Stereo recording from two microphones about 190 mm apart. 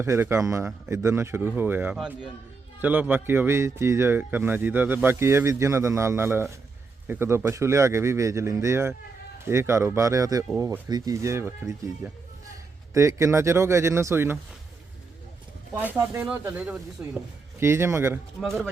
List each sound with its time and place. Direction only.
0.0 s speech: 15° right (ahead or behind)
15.9 s speech: 10° right (ahead or behind)
18.3 s speech: 5° left (ahead or behind)